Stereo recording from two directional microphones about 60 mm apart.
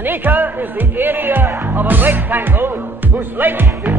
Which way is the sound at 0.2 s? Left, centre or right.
Right.